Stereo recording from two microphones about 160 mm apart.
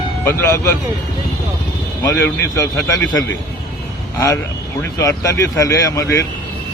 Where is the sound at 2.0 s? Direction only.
20° left (ahead or behind).